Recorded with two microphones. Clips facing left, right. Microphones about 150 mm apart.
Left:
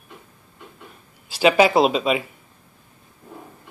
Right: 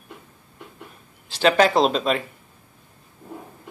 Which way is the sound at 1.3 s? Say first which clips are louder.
Left 2 dB; 10° left (ahead or behind).